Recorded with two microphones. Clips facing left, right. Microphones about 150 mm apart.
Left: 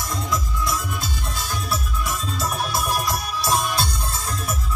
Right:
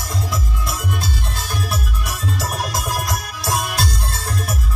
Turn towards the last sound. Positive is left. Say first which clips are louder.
# right 2 dB
turn(degrees=-75)  # may be behind; listen again after turning